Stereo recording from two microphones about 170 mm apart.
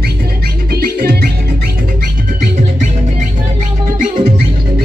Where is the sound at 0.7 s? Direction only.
65° right (ahead or behind).